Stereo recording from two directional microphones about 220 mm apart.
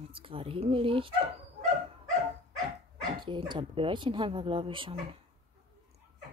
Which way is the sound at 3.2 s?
20° right (ahead or behind).